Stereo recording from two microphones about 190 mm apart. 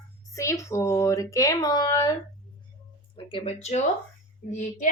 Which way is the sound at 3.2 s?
30° left (ahead or behind).